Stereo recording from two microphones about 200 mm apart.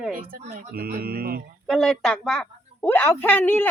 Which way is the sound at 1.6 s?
Centre (ahead or behind).